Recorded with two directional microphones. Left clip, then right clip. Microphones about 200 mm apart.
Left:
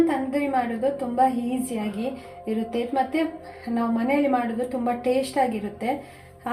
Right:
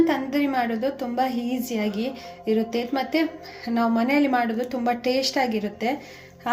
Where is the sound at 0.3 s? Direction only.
30° right (ahead or behind).